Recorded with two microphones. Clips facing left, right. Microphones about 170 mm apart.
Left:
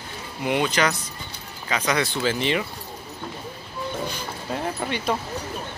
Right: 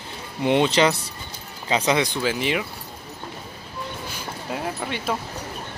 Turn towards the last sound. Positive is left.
turn(degrees=0)  # may be behind; listen again after turning